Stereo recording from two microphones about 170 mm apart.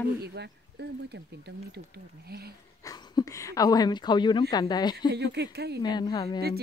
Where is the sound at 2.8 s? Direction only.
20° left (ahead or behind).